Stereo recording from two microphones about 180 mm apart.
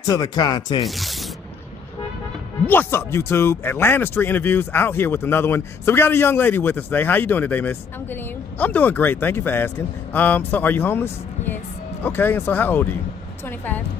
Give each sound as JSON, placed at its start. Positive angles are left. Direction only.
{"t": 0.0, "sound": "speech", "side_deg": 20}
{"t": 0.8, "sound": "speech", "side_deg": 0}
{"t": 2.6, "sound": "speech", "side_deg": 10}